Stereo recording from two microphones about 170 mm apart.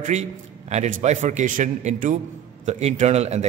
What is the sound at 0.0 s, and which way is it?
A man's voice, 40° right (ahead or behind).